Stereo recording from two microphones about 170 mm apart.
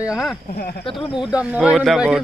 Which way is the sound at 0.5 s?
65° left (ahead or behind).